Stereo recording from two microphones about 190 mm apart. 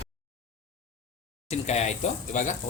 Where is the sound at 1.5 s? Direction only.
35° left (ahead or behind).